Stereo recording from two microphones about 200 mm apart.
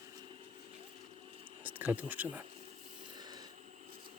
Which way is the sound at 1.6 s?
10° right (ahead or behind).